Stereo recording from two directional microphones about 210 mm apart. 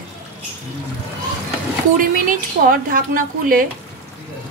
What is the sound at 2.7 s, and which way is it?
Speech, 40° right (ahead or behind).